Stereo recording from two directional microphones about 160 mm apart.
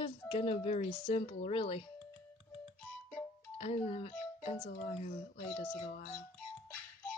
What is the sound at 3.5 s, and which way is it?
Speech, 40° left (ahead or behind).